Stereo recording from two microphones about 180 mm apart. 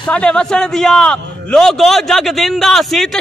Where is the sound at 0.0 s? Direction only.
5° left (ahead or behind).